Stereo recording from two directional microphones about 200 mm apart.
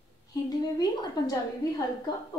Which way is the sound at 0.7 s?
20° left (ahead or behind).